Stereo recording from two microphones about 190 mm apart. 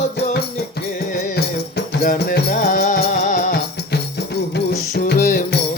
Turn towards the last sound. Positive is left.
turn(degrees=60)  # may be behind; listen again after turning